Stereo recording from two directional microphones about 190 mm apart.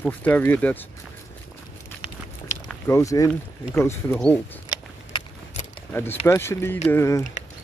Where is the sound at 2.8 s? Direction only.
15° left (ahead or behind).